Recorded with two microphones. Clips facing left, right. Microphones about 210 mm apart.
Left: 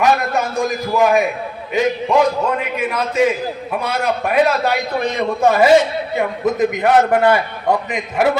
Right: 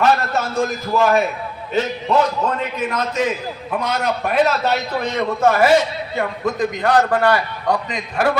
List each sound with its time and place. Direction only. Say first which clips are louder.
0.0 s a man's voice: left 1 dB; 15° left (ahead or behind)